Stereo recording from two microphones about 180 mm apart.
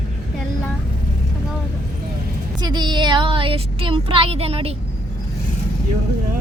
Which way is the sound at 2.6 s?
25° right (ahead or behind).